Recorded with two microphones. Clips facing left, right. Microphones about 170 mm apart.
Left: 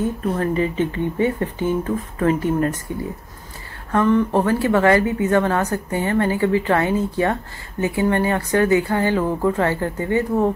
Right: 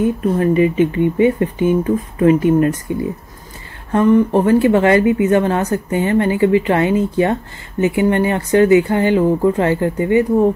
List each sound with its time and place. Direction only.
0.0 s speech: 15° right (ahead or behind)
3.9 s speech: 15° right (ahead or behind)